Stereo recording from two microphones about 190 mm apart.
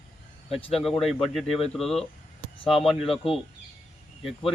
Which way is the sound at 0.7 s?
Centre (ahead or behind).